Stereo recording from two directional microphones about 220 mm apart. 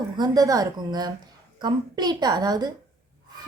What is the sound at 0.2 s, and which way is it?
A woman's voice, 15° right (ahead or behind).